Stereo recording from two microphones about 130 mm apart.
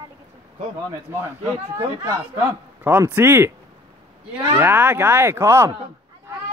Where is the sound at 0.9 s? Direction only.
20° right (ahead or behind).